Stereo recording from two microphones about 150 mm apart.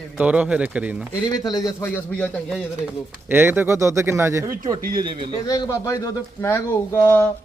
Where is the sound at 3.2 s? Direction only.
15° right (ahead or behind).